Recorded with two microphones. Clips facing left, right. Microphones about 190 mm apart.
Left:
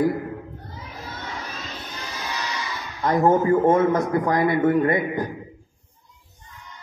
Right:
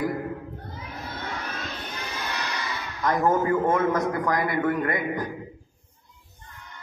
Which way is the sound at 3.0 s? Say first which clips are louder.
Left 4 dB; 25° left (ahead or behind).